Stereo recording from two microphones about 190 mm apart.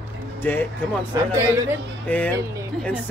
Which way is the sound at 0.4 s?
10° left (ahead or behind).